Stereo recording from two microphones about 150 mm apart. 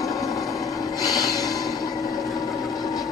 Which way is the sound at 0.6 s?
25° left (ahead or behind).